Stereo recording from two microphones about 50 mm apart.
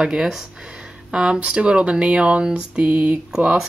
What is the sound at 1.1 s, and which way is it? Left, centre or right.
Speech, right.